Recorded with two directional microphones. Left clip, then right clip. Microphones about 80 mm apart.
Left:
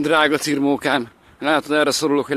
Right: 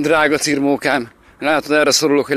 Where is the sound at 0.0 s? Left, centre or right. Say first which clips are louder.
Right 2 dB; centre.